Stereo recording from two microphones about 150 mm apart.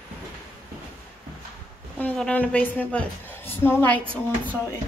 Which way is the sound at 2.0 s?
10° left (ahead or behind).